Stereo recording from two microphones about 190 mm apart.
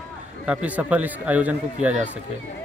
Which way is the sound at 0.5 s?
10° right (ahead or behind).